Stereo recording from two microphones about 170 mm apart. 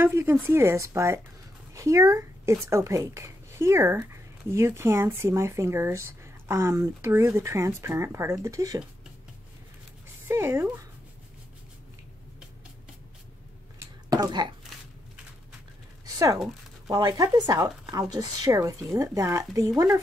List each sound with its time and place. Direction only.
0.0 s speech: 15° right (ahead or behind)
10.2 s speech: 15° right (ahead or behind)
13.7 s a sound: 20° right (ahead or behind)
16.9 s speech: 25° right (ahead or behind)